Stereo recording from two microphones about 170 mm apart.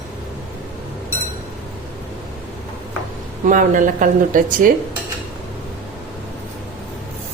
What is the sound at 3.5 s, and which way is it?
Speech, 50° right (ahead or behind).